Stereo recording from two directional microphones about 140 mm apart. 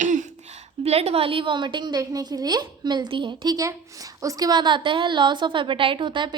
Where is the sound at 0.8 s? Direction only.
45° right (ahead or behind).